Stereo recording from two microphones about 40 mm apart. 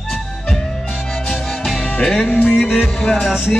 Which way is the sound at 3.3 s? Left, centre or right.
Centre.